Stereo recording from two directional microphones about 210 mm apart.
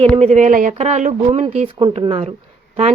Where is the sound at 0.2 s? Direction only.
30° right (ahead or behind).